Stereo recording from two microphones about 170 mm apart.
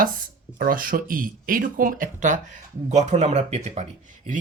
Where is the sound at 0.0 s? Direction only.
55° right (ahead or behind).